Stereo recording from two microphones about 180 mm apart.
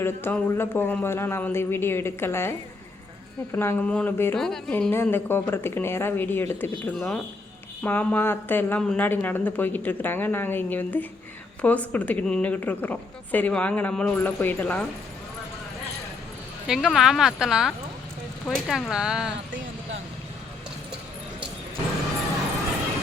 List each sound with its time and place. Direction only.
0.0 s speech: 10° left (ahead or behind)
6.9 s speech: centre (ahead or behind)
16.6 s speech: centre (ahead or behind)